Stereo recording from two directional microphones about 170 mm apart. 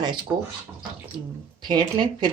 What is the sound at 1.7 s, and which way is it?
Speech, 25° right (ahead or behind).